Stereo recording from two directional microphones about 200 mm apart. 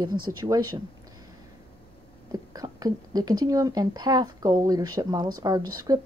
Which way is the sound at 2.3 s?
20° right (ahead or behind).